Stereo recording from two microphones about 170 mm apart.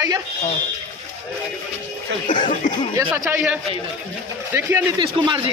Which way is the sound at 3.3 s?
10° right (ahead or behind).